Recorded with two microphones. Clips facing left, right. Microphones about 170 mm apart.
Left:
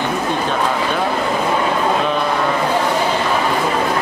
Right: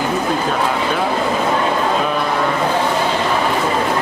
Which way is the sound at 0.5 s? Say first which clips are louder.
Even; 5° right (ahead or behind).